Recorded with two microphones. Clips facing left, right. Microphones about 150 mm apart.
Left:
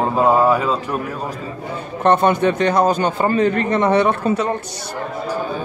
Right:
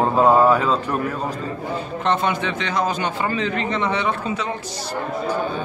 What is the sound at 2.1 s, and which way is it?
A man's voice, 50° left (ahead or behind).